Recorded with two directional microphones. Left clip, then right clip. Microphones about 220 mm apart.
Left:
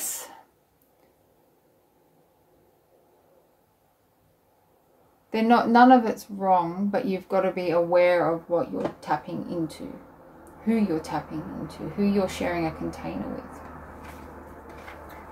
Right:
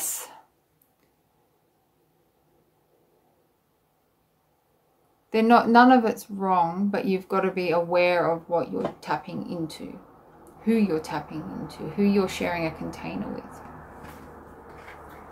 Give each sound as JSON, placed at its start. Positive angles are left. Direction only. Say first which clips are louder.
{"t": 0.0, "sound": "throat clearing", "louder": "right 1 dB", "side_deg": -15}
{"t": 5.3, "sound": "speech", "louder": "right 2 dB", "side_deg": -15}